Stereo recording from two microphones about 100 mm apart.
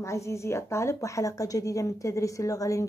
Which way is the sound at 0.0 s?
30° left (ahead or behind).